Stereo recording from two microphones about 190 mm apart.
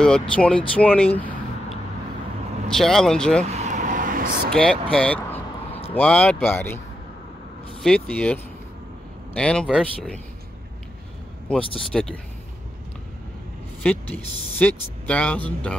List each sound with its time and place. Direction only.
0.0 s speech: 5° left (ahead or behind)
3.4 s vehicle: 35° right (ahead or behind)
4.5 s speech: 5° left (ahead or behind)
4.9 s vehicle: 5° left (ahead or behind)
5.9 s speech: 5° left (ahead or behind)
7.8 s speech: 5° left (ahead or behind)
11.4 s speech: 5° left (ahead or behind)
14.6 s speech: 5° left (ahead or behind)